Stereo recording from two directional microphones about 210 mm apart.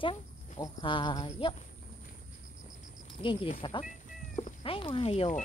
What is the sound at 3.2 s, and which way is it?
Speech, 25° left (ahead or behind).